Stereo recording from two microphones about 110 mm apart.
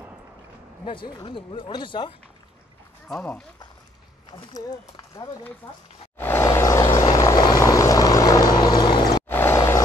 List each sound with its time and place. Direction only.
0.8 s speech: 45° left (ahead or behind)
4.6 s speech: 35° left (ahead or behind)
5.6 s speech: 20° left (ahead or behind)
6.1 s vehicle: 20° left (ahead or behind); by 9.2 s 40° left (ahead or behind)
9.3 s vehicle: 20° left (ahead or behind)